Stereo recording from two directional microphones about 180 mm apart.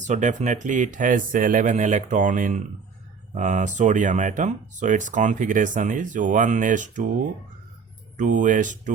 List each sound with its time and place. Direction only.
0.0 s speech: 40° right (ahead or behind)
8.1 s speech: 45° right (ahead or behind)